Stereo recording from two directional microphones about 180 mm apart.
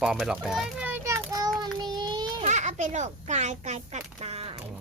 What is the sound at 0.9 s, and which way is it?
Child singing, 10° right (ahead or behind).